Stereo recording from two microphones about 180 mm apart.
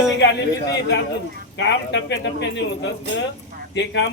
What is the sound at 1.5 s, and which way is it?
Speech, 80° left.